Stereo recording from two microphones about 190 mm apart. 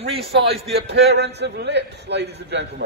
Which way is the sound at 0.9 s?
65° right (ahead or behind).